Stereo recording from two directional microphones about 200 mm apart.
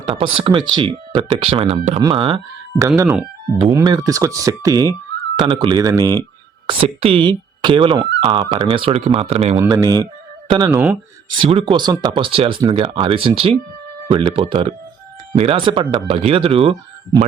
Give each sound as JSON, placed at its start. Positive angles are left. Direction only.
{"t": 0.0, "sound": "speech", "side_deg": -25}
{"t": 2.0, "sound": "speech", "side_deg": -25}
{"t": 2.8, "sound": "speech", "side_deg": -10}
{"t": 9.6, "sound": "speech", "side_deg": -15}
{"t": 10.7, "sound": "speech", "side_deg": -5}
{"t": 11.3, "sound": "speech", "side_deg": -25}